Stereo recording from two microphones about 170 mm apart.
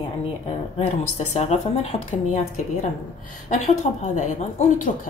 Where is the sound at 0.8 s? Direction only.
40° left (ahead or behind).